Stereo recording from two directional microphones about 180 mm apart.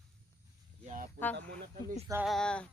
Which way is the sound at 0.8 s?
50° right (ahead or behind).